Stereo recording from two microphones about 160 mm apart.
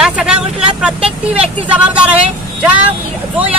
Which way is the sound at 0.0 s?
5° right (ahead or behind).